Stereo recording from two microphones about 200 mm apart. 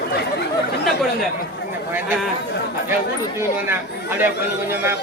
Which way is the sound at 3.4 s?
10° right (ahead or behind).